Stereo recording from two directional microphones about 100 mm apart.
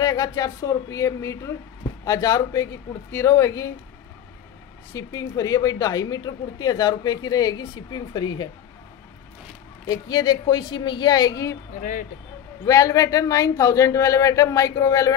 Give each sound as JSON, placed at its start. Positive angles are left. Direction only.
{"t": 0.0, "sound": "speech", "side_deg": 40}
{"t": 4.9, "sound": "speech", "side_deg": 35}
{"t": 9.8, "sound": "a woman's voice", "side_deg": 45}
{"t": 12.6, "sound": "speech", "side_deg": 35}